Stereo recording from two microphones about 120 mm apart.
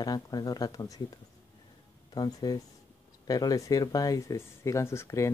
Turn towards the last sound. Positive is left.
turn(degrees=25)  # may be behind; listen again after turning